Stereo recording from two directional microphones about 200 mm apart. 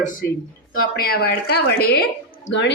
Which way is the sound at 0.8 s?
50° left (ahead or behind).